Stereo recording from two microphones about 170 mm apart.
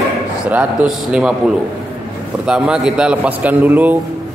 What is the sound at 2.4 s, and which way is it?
A man's voice, 5° right (ahead or behind).